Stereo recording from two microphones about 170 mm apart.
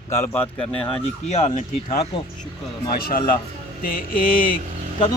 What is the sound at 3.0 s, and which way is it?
Speech, 60° left (ahead or behind).